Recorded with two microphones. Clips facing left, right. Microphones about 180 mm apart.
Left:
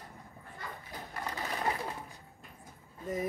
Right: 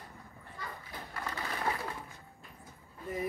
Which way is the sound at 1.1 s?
20° left (ahead or behind).